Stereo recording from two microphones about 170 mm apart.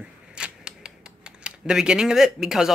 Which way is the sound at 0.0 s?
5° right (ahead or behind).